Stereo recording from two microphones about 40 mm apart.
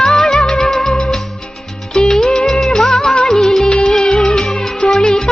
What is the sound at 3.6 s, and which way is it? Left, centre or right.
Music, left.